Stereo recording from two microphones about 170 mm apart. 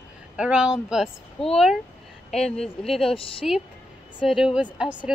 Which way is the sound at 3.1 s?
30° left (ahead or behind).